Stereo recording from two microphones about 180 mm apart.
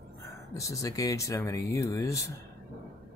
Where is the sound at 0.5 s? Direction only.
15° left (ahead or behind).